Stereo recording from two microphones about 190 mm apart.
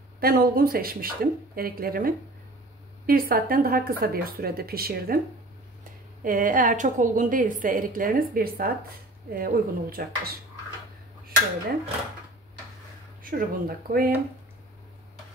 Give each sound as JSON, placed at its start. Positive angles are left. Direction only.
{"t": 0.2, "sound": "a woman's voice", "side_deg": -50}
{"t": 6.2, "sound": "a woman's voice", "side_deg": -45}
{"t": 13.2, "sound": "a woman's voice", "side_deg": -50}